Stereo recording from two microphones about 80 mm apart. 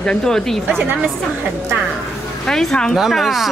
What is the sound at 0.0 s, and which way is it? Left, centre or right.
Speech, centre.